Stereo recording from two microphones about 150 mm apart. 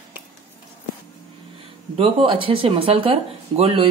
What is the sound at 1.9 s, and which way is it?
Speech, 35° right (ahead or behind).